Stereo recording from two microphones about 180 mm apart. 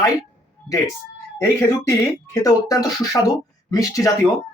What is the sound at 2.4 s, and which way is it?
Speech, 20° left (ahead or behind).